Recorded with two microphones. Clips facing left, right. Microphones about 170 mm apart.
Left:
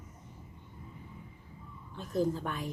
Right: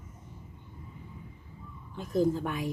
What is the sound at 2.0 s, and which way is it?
Speech, 10° right (ahead or behind).